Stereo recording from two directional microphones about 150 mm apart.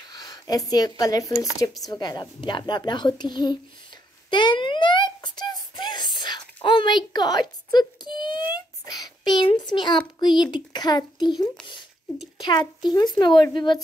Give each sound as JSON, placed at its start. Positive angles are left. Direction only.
{"t": 0.1, "sound": "a woman's voice", "side_deg": 25}
{"t": 4.3, "sound": "a sound", "side_deg": 30}
{"t": 9.4, "sound": "a child's voice", "side_deg": 30}